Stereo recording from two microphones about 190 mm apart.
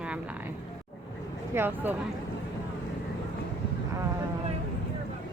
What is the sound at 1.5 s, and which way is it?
Speech, 10° right (ahead or behind).